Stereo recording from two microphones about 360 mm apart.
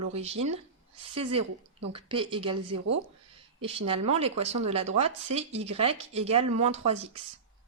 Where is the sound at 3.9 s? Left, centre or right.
Centre.